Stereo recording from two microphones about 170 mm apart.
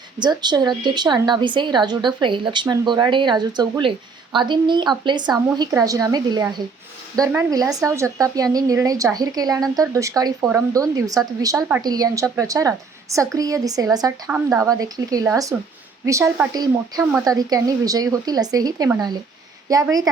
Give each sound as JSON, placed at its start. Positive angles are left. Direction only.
{"t": 0.2, "sound": "a woman's voice", "side_deg": -25}